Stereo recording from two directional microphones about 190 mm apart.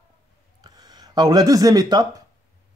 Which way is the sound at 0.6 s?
20° right (ahead or behind).